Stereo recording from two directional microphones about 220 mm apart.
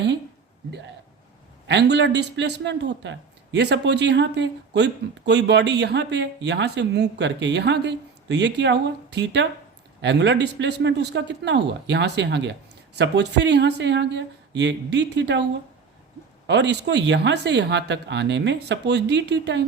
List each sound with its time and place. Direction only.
1.6 s a man's voice: 50° right (ahead or behind)
16.5 s a man's voice: 50° right (ahead or behind)